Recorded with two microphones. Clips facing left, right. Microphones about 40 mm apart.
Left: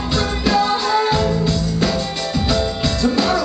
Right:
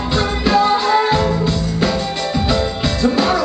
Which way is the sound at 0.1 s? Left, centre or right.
Centre.